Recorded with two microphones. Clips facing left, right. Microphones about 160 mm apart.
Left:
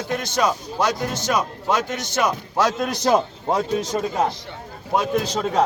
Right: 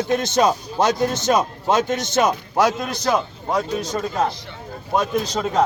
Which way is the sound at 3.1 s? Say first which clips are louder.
Left 2 dB; 35° left (ahead or behind).